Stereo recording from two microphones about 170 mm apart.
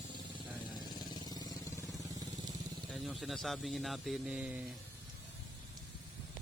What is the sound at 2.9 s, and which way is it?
Speech, centre (ahead or behind).